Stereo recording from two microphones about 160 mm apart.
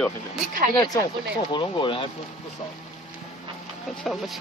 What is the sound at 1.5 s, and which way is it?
Speech, 30° left (ahead or behind).